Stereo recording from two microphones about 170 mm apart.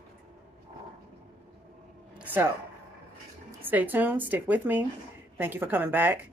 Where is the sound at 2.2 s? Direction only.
10° right (ahead or behind).